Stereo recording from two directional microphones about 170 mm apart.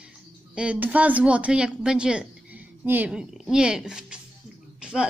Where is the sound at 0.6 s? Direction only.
10° right (ahead or behind).